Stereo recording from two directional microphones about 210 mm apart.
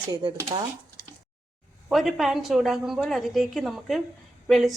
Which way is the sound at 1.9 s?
Centre (ahead or behind).